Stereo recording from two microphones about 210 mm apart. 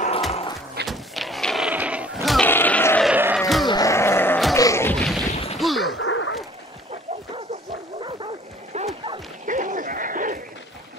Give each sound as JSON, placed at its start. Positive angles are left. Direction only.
{"t": 0.3, "sound": "music", "side_deg": 25}
{"t": 0.8, "sound": "a sound", "side_deg": 0}
{"t": 3.1, "sound": "music", "side_deg": -5}
{"t": 3.6, "sound": "a sound", "side_deg": 15}
{"t": 5.3, "sound": "smash", "side_deg": 30}
{"t": 5.6, "sound": "whack", "side_deg": 0}
{"t": 5.9, "sound": "dog", "side_deg": 70}
{"t": 8.7, "sound": "dog", "side_deg": -25}
{"t": 9.5, "sound": "a sound", "side_deg": -40}